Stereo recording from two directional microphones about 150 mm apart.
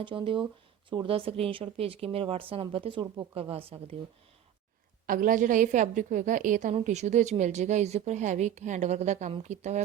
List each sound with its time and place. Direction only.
0.0 s a woman's voice: 35° right (ahead or behind)
5.0 s a woman's voice: 65° right (ahead or behind)